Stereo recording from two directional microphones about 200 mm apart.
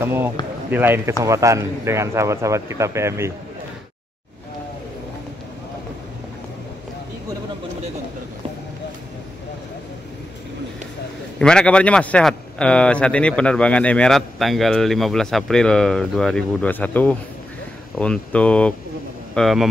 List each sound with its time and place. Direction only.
0.0 s speech: 10° right (ahead or behind)
11.3 s a man's voice: 5° left (ahead or behind)